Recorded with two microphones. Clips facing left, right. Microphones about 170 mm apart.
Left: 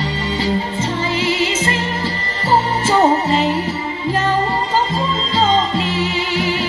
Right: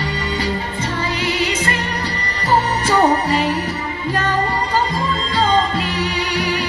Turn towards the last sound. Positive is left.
turn(degrees=25)  # may be behind; listen again after turning